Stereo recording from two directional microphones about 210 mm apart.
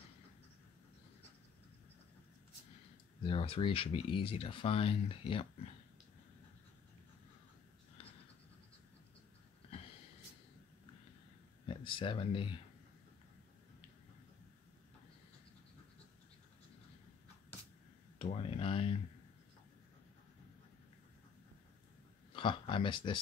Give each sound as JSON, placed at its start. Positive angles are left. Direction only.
{"t": 3.2, "sound": "speech", "side_deg": 25}
{"t": 11.6, "sound": "a sound", "side_deg": 25}
{"t": 18.2, "sound": "speech", "side_deg": 25}
{"t": 22.3, "sound": "speech", "side_deg": 25}